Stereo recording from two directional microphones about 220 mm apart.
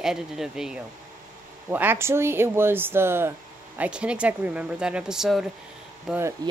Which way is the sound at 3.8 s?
5° right (ahead or behind).